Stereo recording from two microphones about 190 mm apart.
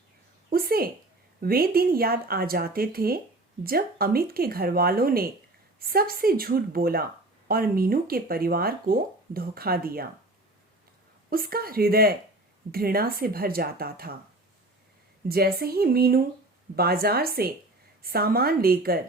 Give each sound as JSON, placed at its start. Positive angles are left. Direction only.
{"t": 0.5, "sound": "a woman's voice", "side_deg": -55}
{"t": 11.3, "sound": "a woman's voice", "side_deg": -50}
{"t": 15.3, "sound": "a woman's voice", "side_deg": -55}